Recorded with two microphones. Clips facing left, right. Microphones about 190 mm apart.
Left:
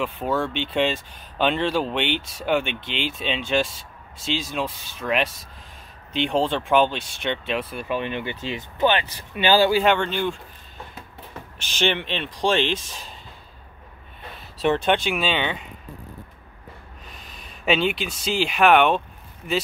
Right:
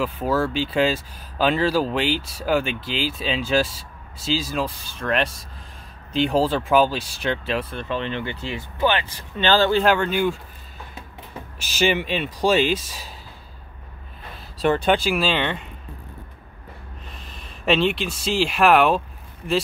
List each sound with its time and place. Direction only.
0.0 s speech: centre (ahead or behind)
7.8 s speech: 15° left (ahead or behind)
9.8 s speech: 5° right (ahead or behind)
11.5 s speech: 5° right (ahead or behind)
14.6 s speech: centre (ahead or behind)
17.1 s speech: centre (ahead or behind)